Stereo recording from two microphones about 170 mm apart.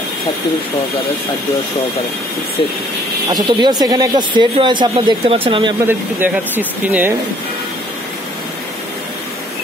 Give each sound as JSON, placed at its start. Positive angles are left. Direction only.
{"t": 3.3, "sound": "speech", "side_deg": -25}
{"t": 5.9, "sound": "speech", "side_deg": -10}